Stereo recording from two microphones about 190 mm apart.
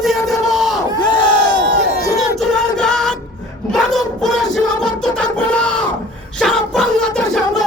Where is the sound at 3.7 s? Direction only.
Centre (ahead or behind).